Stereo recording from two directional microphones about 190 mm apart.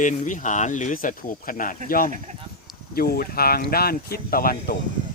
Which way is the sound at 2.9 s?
50° left (ahead or behind).